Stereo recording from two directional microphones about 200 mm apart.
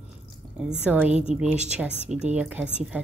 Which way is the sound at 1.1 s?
35° right (ahead or behind).